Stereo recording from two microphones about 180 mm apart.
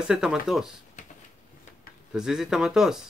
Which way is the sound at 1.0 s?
40° left (ahead or behind).